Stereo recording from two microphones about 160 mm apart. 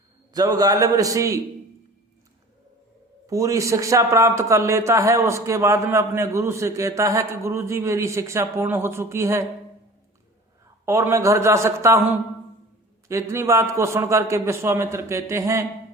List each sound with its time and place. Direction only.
0.3 s a man's voice: 25° right (ahead or behind)
3.2 s a man's voice: 20° right (ahead or behind)
10.8 s a man's voice: 15° right (ahead or behind)
13.1 s a man's voice: 20° right (ahead or behind)